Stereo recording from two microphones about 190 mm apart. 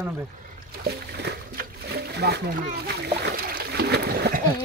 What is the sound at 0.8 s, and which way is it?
Splash, 60° right (ahead or behind).